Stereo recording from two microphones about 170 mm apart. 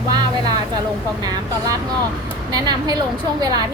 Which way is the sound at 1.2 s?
25° right (ahead or behind).